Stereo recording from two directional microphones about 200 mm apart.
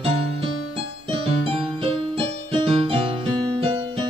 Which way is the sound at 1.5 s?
25° right (ahead or behind).